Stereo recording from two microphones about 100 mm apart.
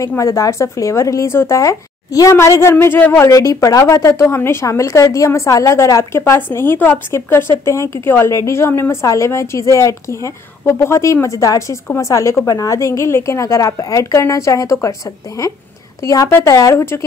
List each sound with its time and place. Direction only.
0.2 s a woman's voice: 30° left (ahead or behind)